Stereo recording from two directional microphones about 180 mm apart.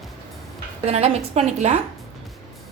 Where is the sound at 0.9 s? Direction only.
35° right (ahead or behind).